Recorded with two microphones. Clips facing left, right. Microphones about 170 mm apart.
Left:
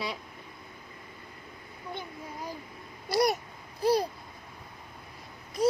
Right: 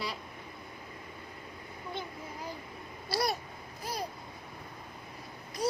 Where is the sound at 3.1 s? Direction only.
20° left (ahead or behind).